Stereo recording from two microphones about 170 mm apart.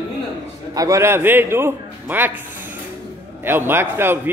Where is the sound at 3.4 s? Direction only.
10° right (ahead or behind).